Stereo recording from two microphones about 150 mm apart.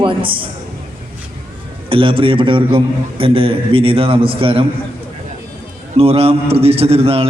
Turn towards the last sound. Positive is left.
turn(degrees=-40)  # may be behind; listen again after turning